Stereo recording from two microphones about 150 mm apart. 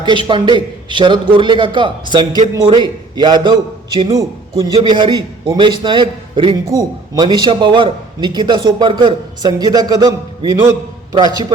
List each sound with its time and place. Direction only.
0.0 s a man's voice: 30° right (ahead or behind)